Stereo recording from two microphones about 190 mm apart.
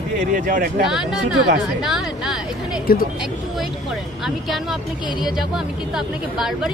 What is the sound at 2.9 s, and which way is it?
Speech, 50° left (ahead or behind).